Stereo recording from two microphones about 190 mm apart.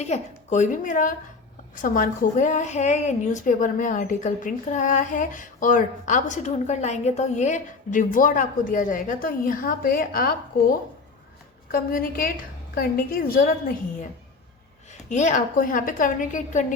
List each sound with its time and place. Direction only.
0.0 s a woman's voice: 35° left (ahead or behind)
15.1 s a woman's voice: 40° left (ahead or behind)